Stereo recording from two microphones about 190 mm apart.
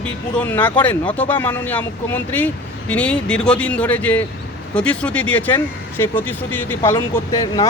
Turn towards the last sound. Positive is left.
turn(degrees=20)  # may be behind; listen again after turning